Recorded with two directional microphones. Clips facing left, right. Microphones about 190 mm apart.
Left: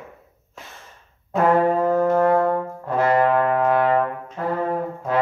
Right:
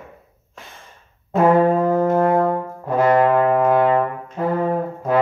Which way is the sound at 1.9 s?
15° right (ahead or behind).